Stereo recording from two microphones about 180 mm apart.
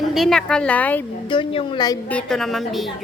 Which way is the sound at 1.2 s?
30° left (ahead or behind).